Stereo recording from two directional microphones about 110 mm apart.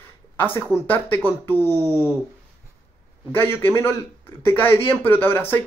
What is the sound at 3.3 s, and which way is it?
Speech, 20° left (ahead or behind).